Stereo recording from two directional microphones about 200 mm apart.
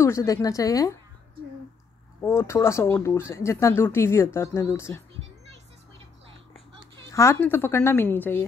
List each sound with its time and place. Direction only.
0.0 s speech: 15° left (ahead or behind)
2.2 s speech: 15° left (ahead or behind)
7.1 s speech: 15° left (ahead or behind)